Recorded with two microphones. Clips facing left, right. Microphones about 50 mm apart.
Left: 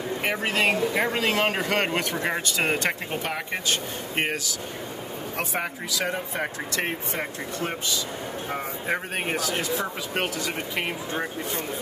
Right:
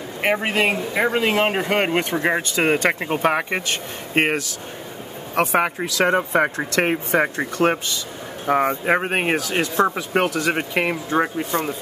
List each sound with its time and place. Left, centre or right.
0.2 s speech: right
3.1 s speech: right
7.2 s speech: right